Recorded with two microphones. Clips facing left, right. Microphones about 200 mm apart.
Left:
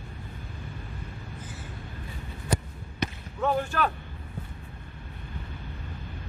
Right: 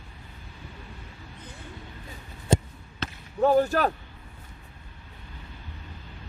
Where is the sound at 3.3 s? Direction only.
35° right (ahead or behind).